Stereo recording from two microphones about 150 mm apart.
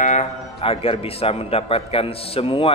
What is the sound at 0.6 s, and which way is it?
A man's voice, 40° left (ahead or behind).